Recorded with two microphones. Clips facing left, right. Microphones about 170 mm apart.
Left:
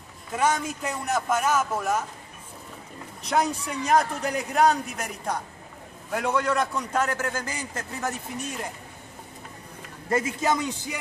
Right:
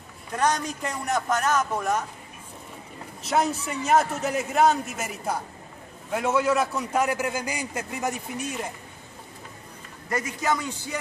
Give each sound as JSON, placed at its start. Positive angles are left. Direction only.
{"t": 0.3, "sound": "a man's voice", "side_deg": 5}
{"t": 3.3, "sound": "a man's voice", "side_deg": -5}
{"t": 10.0, "sound": "a man's voice", "side_deg": 25}